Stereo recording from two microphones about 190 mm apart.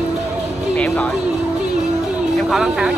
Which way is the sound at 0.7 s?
10° left (ahead or behind).